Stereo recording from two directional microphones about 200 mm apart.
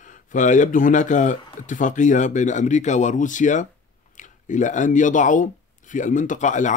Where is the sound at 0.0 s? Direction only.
40° left (ahead or behind).